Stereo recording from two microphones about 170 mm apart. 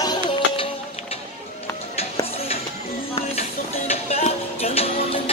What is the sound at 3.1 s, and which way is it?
Music, 35° left (ahead or behind).